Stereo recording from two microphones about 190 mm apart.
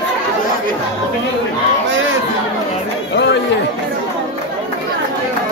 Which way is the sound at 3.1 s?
65° left (ahead or behind).